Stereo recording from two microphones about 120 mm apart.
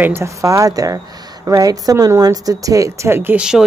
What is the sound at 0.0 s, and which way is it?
Speech, 20° right (ahead or behind).